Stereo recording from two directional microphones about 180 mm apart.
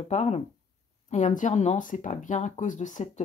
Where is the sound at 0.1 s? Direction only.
35° left (ahead or behind).